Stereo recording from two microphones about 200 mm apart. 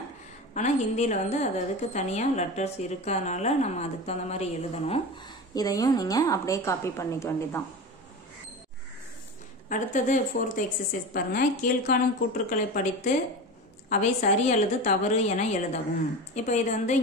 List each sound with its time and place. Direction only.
0.6 s a woman's voice: 35° left (ahead or behind)
5.5 s a woman's voice: 20° left (ahead or behind)
9.7 s a woman's voice: 40° left (ahead or behind)